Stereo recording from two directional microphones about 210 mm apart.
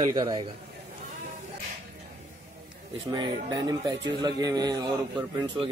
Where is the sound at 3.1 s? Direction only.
20° right (ahead or behind).